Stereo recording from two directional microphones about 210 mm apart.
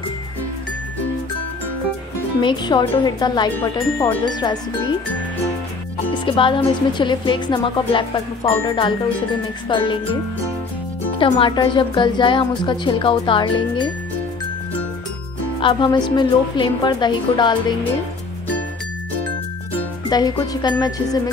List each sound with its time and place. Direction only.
2.4 s a woman's voice: 20° left (ahead or behind)
6.1 s a woman's voice: 25° left (ahead or behind)
11.1 s a woman's voice: 25° left (ahead or behind)
15.6 s a woman's voice: 20° left (ahead or behind)
20.1 s a woman's voice: 20° left (ahead or behind)